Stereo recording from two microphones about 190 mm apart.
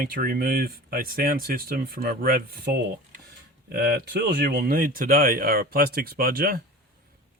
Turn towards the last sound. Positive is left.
turn(degrees=-50)  # may be behind; listen again after turning